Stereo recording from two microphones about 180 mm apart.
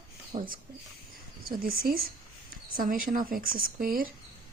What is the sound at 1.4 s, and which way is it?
Speech, 50° right (ahead or behind).